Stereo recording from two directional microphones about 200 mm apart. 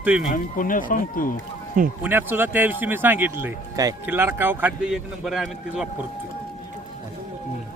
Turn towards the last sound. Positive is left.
turn(degrees=-5)  # may be behind; listen again after turning